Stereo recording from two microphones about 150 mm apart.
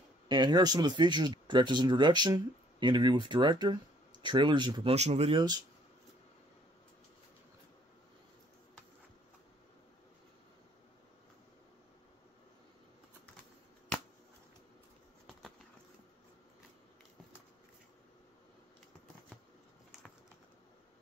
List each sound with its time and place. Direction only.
0.3 s speech: 30° right (ahead or behind)
4.9 s speech: 45° right (ahead or behind)